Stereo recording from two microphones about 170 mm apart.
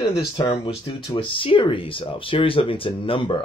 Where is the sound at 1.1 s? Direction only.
30° left (ahead or behind).